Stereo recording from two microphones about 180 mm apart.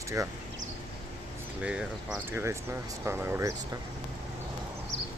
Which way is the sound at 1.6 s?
5° right (ahead or behind).